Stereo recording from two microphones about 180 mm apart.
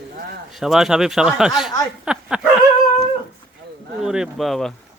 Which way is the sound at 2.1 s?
5° right (ahead or behind).